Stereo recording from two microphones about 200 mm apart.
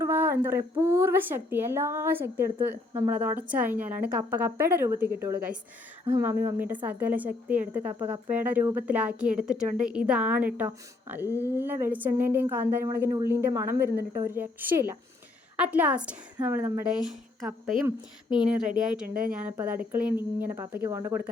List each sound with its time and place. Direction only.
0.0 s a woman's voice: 10° right (ahead or behind)
7.9 s speech: 25° right (ahead or behind)
8.3 s a woman's voice: 10° right (ahead or behind)
19.0 s speech: 45° right (ahead or behind)
19.3 s a woman's voice: 10° right (ahead or behind)